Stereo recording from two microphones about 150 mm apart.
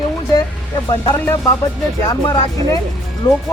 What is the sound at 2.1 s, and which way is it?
Speech, 30° left (ahead or behind).